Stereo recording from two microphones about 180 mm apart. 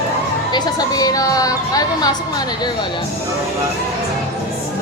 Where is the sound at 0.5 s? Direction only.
20° left (ahead or behind).